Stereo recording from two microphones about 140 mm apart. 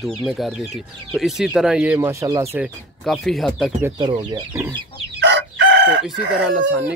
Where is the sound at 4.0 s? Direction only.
35° right (ahead or behind).